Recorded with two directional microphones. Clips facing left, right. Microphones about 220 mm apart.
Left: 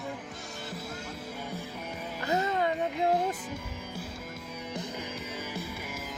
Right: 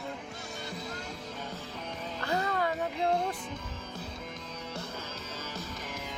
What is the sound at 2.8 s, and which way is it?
Music, centre (ahead or behind).